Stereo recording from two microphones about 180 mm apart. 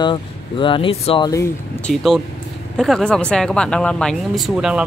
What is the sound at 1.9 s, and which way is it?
Speech, centre (ahead or behind).